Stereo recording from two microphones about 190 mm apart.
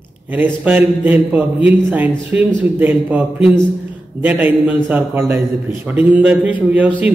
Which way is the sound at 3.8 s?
10° right (ahead or behind).